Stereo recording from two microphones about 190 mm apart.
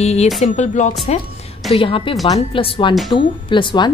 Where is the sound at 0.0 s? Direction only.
35° left (ahead or behind).